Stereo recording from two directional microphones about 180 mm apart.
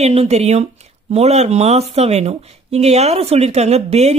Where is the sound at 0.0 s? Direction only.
35° right (ahead or behind).